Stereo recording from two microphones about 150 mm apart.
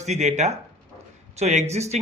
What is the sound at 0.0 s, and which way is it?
Speech, 50° right (ahead or behind).